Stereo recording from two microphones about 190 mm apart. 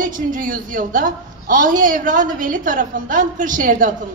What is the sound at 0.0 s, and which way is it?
A woman's voice, 45° right (ahead or behind).